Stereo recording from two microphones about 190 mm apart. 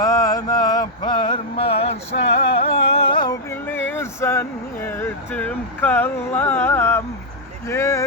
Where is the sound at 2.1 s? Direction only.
70° left (ahead or behind).